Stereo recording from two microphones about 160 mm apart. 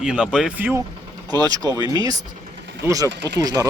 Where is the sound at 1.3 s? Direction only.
25° right (ahead or behind).